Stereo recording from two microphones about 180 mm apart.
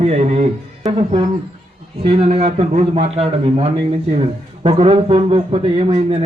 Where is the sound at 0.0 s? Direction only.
35° right (ahead or behind).